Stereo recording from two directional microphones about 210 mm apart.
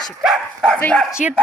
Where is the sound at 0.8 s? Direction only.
5° left (ahead or behind).